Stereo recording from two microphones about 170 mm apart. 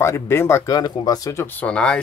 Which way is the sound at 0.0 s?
15° left (ahead or behind).